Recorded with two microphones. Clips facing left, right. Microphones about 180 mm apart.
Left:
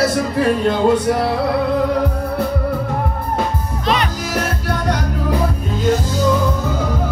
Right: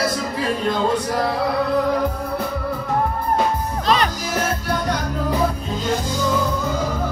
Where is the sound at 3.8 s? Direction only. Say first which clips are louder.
Even; 35° right (ahead or behind).